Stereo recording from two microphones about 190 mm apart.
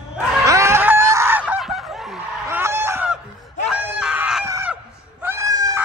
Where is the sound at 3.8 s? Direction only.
5° right (ahead or behind).